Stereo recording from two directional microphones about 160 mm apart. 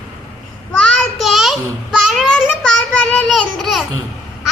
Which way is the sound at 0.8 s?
Centre (ahead or behind).